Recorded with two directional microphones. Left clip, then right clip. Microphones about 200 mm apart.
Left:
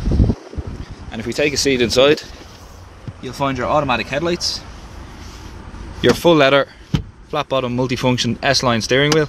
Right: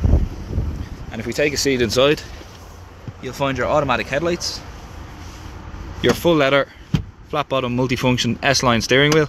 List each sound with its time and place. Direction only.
1.1 s speech: 10° left (ahead or behind)
3.3 s speech: 15° left (ahead or behind)
5.9 s speech: 25° left (ahead or behind); by 9.3 s centre (ahead or behind)